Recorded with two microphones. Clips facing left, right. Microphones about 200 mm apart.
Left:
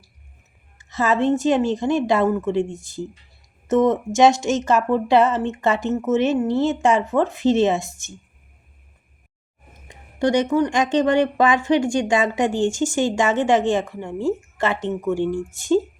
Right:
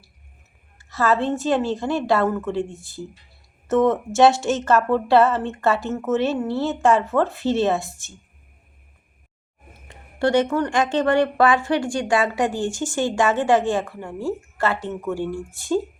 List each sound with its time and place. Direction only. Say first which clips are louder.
0.8 s speech: left 1 dB; 20° left (ahead or behind)
3.7 s speech: left 1 dB; 20° left (ahead or behind)
9.7 s speech: left 1 dB; 15° left (ahead or behind)